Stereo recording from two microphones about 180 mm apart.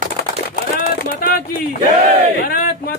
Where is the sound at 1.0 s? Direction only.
55° left (ahead or behind).